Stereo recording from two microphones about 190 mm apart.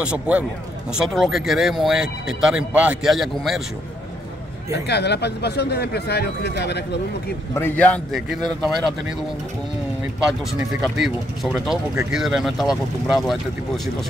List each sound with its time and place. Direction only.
0.0 s a man's voice: 5° right (ahead or behind)
4.8 s speech: 60° left (ahead or behind)
7.5 s speech: 10° left (ahead or behind)
10.8 s speech: centre (ahead or behind)